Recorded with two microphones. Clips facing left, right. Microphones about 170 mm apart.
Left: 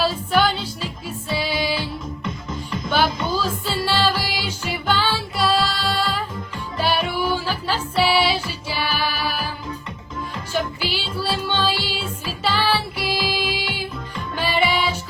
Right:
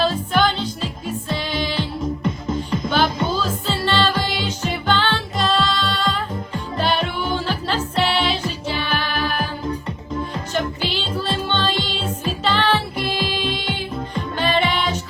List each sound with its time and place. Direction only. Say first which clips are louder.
0.0 s music: right 1 dB; 10° left (ahead or behind)
2.2 s music: right 6 dB; 45° right (ahead or behind)
3.4 s music: right 1 dB; 10° left (ahead or behind)
10.5 s music: even; 10° left (ahead or behind)